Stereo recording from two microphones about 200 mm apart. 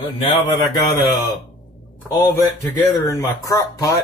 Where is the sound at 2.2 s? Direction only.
10° left (ahead or behind).